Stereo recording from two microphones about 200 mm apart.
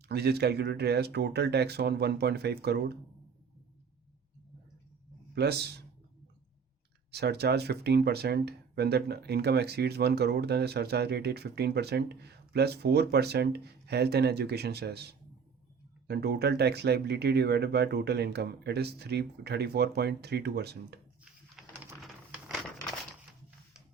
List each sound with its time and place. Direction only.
0.1 s speech: 55° right (ahead or behind)
5.3 s speech: 55° right (ahead or behind)
7.1 s speech: 55° right (ahead or behind)
22.0 s a sound: centre (ahead or behind)